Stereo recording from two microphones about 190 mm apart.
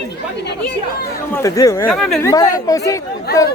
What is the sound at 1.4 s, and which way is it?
Speech, 15° left (ahead or behind).